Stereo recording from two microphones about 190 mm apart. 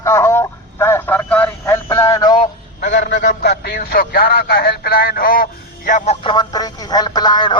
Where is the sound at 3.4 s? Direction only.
60° left (ahead or behind); by 6.1 s 40° left (ahead or behind).